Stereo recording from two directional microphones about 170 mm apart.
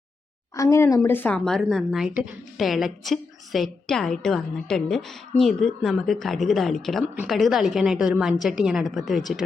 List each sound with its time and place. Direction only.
0.5 s a woman's voice: 20° left (ahead or behind); by 9.4 s centre (ahead or behind)